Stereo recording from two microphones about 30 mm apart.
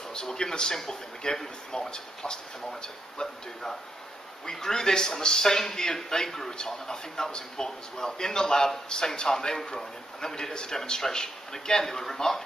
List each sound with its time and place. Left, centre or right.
0.1 s a man's voice: left
4.5 s a man's voice: centre